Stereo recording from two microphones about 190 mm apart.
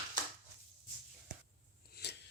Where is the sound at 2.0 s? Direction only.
55° left (ahead or behind).